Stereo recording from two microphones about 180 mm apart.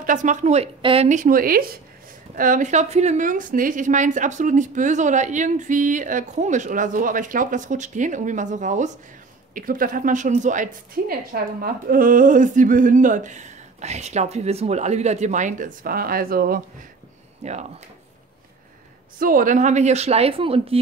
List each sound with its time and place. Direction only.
0.0 s a woman's voice: 45° right (ahead or behind)
17.4 s speech: 40° right (ahead or behind)
19.1 s a woman's voice: 50° right (ahead or behind); by 20.8 s 30° right (ahead or behind)